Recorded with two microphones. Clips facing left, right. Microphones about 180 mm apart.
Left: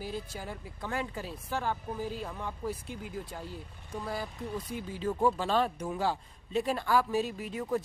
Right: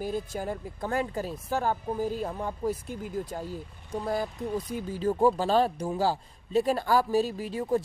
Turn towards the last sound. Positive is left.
turn(degrees=-30)  # may be behind; listen again after turning